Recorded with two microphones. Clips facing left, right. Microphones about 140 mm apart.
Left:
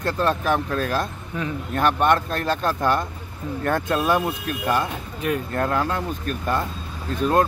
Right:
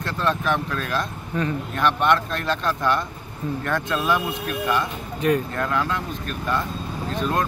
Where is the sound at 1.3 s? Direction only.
5° left (ahead or behind).